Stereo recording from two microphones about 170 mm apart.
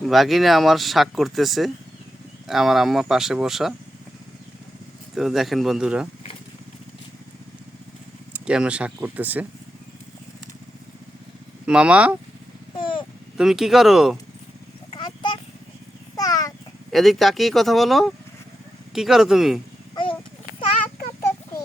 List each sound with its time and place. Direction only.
0.0 s speech: centre (ahead or behind)
5.1 s speech: centre (ahead or behind)
8.3 s speech: 5° right (ahead or behind)
11.6 s speech: 5° right (ahead or behind)
13.3 s speech: centre (ahead or behind)
14.9 s a sound: 25° left (ahead or behind)
16.9 s speech: centre (ahead or behind)